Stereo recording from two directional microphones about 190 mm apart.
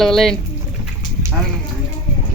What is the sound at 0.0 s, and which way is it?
Speech, centre (ahead or behind).